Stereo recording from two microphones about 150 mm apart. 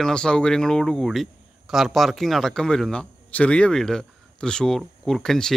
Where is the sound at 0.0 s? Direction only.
5° left (ahead or behind).